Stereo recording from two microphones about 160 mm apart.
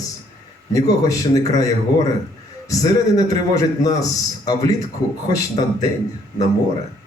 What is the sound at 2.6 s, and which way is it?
A man's voice, 20° left (ahead or behind).